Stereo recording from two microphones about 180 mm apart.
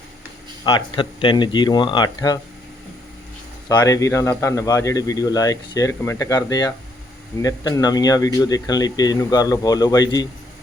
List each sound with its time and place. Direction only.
0.6 s a man's voice: 25° left (ahead or behind)
3.7 s a man's voice: 20° left (ahead or behind)